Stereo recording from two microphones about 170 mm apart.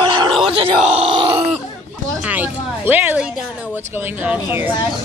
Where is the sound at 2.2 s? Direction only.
10° right (ahead or behind).